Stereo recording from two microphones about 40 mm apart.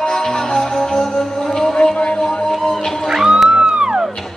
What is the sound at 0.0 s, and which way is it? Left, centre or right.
Music, centre.